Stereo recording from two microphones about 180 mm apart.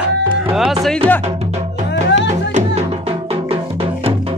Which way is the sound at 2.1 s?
40° right (ahead or behind).